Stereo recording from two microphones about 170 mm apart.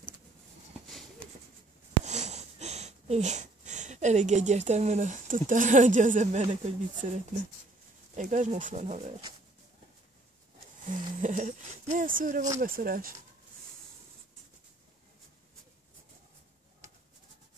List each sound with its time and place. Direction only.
2.0 s speech: 40° right (ahead or behind)
8.2 s speech: 45° right (ahead or behind)
10.9 s speech: 50° right (ahead or behind)